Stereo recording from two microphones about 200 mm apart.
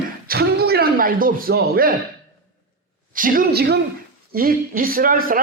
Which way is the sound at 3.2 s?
45° right (ahead or behind).